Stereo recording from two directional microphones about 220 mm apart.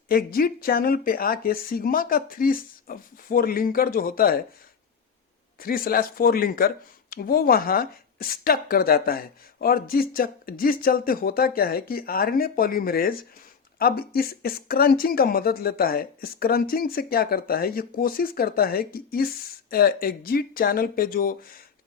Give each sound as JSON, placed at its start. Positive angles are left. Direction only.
{"t": 0.1, "sound": "speech", "side_deg": 45}
{"t": 5.5, "sound": "speech", "side_deg": 40}